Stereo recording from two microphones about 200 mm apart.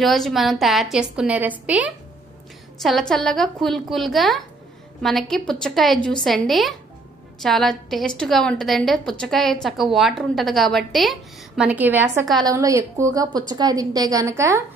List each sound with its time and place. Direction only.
0.0 s a woman's voice: centre (ahead or behind); by 14.6 s 15° right (ahead or behind)